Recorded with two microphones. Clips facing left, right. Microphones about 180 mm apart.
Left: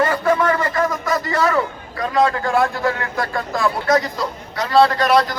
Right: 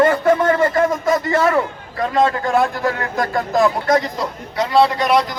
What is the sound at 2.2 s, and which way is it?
A man's voice, 20° right (ahead or behind).